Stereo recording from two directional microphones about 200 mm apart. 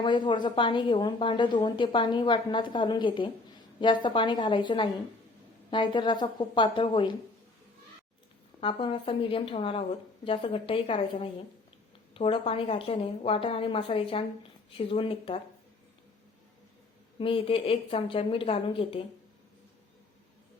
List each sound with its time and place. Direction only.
0.0 s a woman's voice: 25° left (ahead or behind)
8.6 s a woman's voice: 25° left (ahead or behind)
17.2 s a woman's voice: 25° left (ahead or behind)